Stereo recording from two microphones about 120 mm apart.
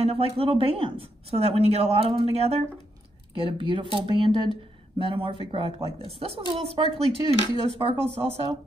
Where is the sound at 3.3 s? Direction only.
45° right (ahead or behind).